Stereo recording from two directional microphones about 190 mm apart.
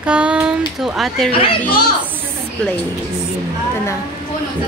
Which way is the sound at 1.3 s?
30° left (ahead or behind).